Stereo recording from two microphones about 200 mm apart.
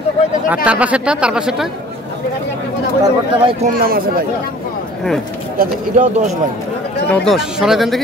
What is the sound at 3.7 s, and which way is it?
Speech, 45° right (ahead or behind).